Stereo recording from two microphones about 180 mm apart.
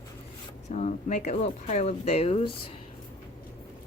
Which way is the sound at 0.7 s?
40° left (ahead or behind).